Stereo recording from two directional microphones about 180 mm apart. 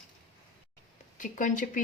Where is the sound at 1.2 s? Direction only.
45° left (ahead or behind).